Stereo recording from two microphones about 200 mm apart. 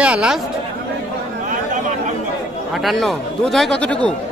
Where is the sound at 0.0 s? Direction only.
5° right (ahead or behind).